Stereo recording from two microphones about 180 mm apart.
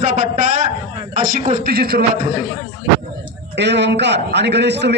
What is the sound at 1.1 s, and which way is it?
Speech, 45° right (ahead or behind).